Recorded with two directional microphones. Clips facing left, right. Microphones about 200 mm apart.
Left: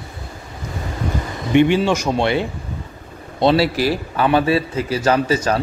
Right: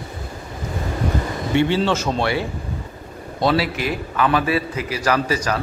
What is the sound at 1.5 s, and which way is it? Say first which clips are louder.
Speech: left 4 dB; 15° left (ahead or behind).